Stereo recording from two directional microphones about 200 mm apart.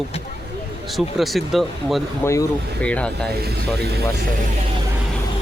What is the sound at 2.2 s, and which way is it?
Speech, 10° left (ahead or behind).